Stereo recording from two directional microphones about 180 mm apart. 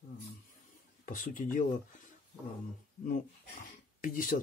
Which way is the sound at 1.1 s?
45° left (ahead or behind).